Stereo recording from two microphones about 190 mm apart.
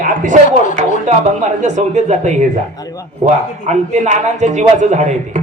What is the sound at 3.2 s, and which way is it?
A man's voice, 40° right (ahead or behind).